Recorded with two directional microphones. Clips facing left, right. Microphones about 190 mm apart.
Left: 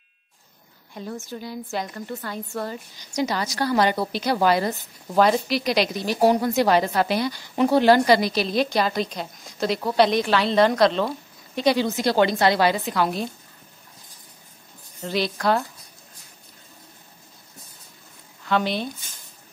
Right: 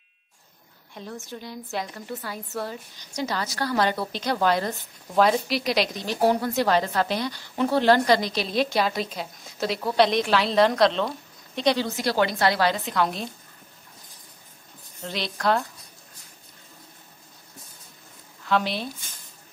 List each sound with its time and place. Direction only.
0.9 s a woman's voice: centre (ahead or behind)
3.2 s a woman's voice: 15° left (ahead or behind)
11.8 s a woman's voice: 20° left (ahead or behind)
12.6 s a woman's voice: 5° left (ahead or behind)
15.0 s a woman's voice: centre (ahead or behind)
18.4 s speech: centre (ahead or behind)